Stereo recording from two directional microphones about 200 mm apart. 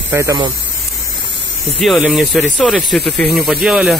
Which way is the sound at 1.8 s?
5° right (ahead or behind).